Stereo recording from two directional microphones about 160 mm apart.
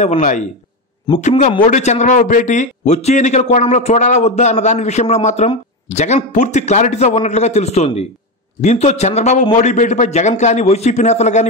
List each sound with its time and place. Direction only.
0.0 s a man's voice: 50° left (ahead or behind)
1.7 s a man's voice: 45° left (ahead or behind)